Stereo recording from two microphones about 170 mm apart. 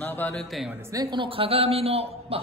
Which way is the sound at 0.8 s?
25° right (ahead or behind).